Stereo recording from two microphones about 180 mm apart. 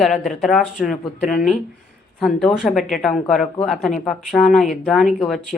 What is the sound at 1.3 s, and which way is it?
Speech, 50° left (ahead or behind).